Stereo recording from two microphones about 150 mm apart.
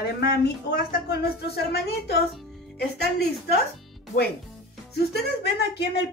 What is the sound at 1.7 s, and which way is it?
Speech, 90° left.